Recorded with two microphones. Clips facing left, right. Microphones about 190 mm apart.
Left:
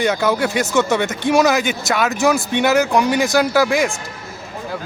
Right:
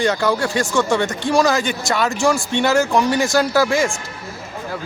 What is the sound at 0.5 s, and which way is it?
Speech, 20° left (ahead or behind).